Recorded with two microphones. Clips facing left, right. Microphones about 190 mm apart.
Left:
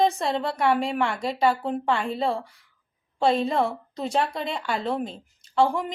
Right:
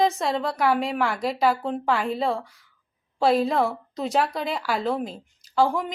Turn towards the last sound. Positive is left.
turn(degrees=0)  # may be behind; listen again after turning